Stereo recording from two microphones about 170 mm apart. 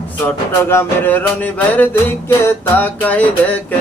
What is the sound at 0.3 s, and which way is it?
Music, 15° left (ahead or behind).